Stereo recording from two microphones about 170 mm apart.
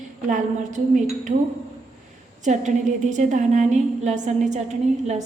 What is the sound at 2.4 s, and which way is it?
A woman's voice, 45° right (ahead or behind).